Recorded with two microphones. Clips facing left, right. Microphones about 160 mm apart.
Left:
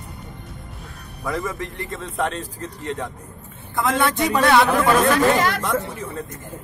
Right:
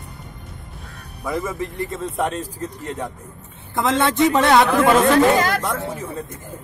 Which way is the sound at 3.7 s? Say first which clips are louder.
Right 1 dB; 20° right (ahead or behind).